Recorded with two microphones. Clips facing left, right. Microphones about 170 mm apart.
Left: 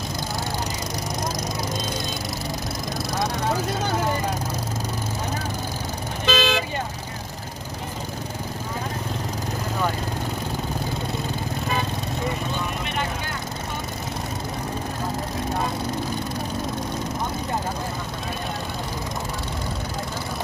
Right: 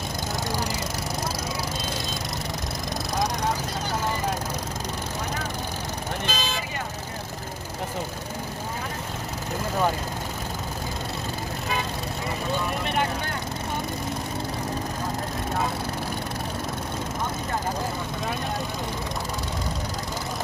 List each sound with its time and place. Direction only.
6.2 s vehicle: 75° left (ahead or behind)